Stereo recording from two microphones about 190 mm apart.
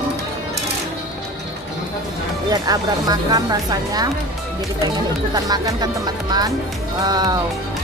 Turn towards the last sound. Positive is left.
turn(degrees=-20)  # may be behind; listen again after turning